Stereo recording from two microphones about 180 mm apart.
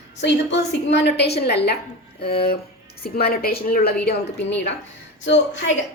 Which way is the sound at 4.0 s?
70° left (ahead or behind).